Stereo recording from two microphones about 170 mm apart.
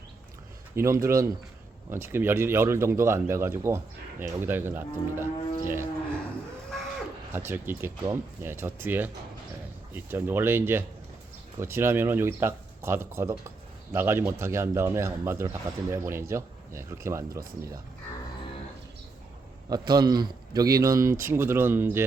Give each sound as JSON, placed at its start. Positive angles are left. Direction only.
{"t": 0.8, "sound": "speech", "side_deg": -15}
{"t": 7.3, "sound": "speech", "side_deg": -15}
{"t": 19.7, "sound": "a man's voice", "side_deg": -25}